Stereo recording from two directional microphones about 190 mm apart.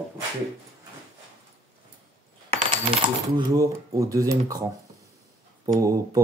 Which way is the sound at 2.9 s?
20° right (ahead or behind).